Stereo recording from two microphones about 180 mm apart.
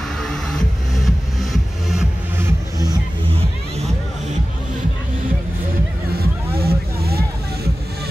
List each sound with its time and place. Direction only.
0.2 s music: centre (ahead or behind)
2.3 s music: 15° right (ahead or behind)
3.3 s music: 30° right (ahead or behind)
6.1 s music: 60° right (ahead or behind)